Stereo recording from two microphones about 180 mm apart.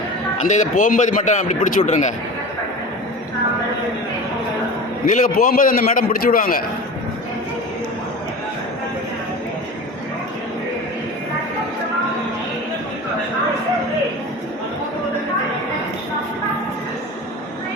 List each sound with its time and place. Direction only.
0.4 s speech: 45° left (ahead or behind)
5.0 s a man's voice: 50° left (ahead or behind)